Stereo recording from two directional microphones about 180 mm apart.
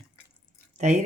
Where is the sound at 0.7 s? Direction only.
45° right (ahead or behind).